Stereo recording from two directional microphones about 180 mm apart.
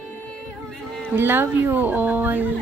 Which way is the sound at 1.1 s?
10° right (ahead or behind).